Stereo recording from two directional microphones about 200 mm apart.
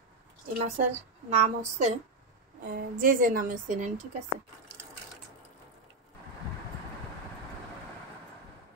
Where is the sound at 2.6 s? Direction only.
45° right (ahead or behind).